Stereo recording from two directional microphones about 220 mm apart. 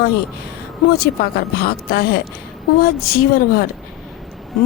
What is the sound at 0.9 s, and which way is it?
A woman's voice, 45° left (ahead or behind).